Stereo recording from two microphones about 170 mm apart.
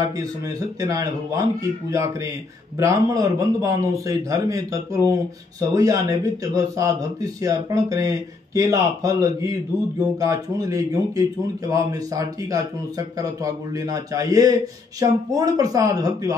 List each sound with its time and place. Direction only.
0.2 s a man's voice: 20° right (ahead or behind)